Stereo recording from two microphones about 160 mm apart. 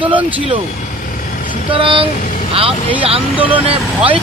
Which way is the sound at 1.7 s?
35° right (ahead or behind).